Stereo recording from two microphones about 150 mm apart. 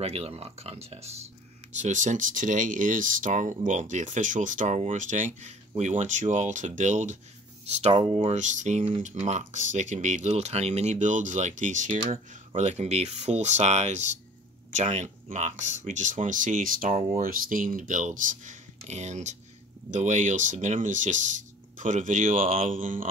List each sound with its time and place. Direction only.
0.0 s speech: 40° right (ahead or behind)
1.8 s speech: 55° right (ahead or behind)
7.9 s speech: 40° right (ahead or behind); by 23.0 s 60° right (ahead or behind)